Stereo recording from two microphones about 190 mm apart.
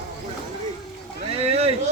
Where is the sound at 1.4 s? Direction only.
30° right (ahead or behind).